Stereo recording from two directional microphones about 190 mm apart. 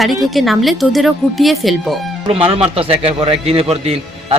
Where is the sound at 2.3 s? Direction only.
30° right (ahead or behind).